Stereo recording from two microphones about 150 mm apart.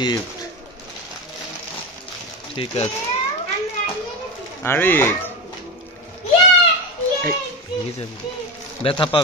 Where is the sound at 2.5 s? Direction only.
40° left (ahead or behind).